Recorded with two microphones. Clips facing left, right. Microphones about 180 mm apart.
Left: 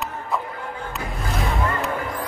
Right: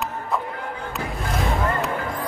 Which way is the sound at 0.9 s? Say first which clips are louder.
Right 2 dB; centre (ahead or behind).